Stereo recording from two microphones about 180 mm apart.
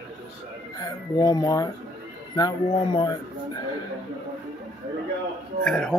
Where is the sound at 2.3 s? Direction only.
25° left (ahead or behind).